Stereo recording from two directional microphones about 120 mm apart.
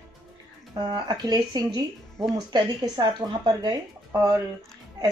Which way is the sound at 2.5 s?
35° right (ahead or behind).